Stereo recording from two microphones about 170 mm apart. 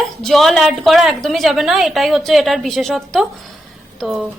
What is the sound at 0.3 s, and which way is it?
A woman's voice, centre (ahead or behind).